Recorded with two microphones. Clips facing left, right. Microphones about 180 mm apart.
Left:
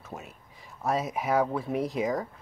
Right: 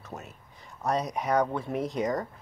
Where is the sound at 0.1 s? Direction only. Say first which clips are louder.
Even; centre (ahead or behind).